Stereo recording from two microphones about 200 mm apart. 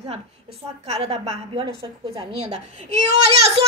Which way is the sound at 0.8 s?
30° right (ahead or behind).